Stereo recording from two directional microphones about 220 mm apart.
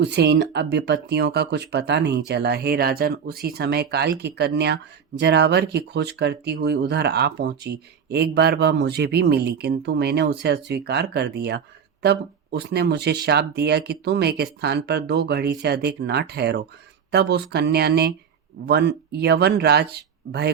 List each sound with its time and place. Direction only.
0.0 s speech: 50° right (ahead or behind)